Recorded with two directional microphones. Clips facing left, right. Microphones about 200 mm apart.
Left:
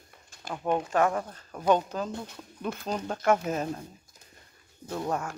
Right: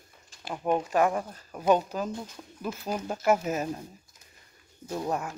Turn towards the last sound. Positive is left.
turn(degrees=-15)  # may be behind; listen again after turning